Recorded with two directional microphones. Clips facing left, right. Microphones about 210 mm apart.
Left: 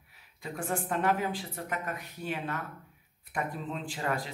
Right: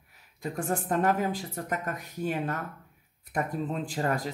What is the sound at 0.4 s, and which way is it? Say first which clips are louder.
Speech: right 3 dB; 45° right (ahead or behind).